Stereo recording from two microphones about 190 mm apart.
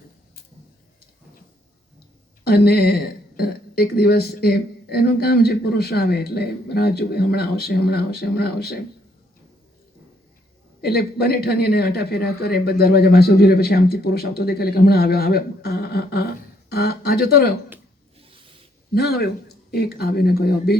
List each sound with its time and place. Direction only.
2.4 s a man's voice: 55° left (ahead or behind)
10.8 s a man's voice: 55° left (ahead or behind)
18.9 s a man's voice: 55° left (ahead or behind)